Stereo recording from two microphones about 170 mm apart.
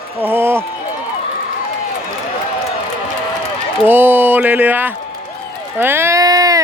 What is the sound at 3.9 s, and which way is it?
Speech, 10° right (ahead or behind).